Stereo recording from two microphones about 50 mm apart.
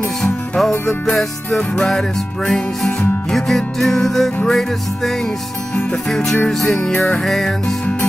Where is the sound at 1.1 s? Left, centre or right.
Centre.